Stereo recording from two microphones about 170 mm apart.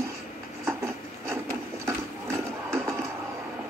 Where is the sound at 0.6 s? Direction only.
15° right (ahead or behind).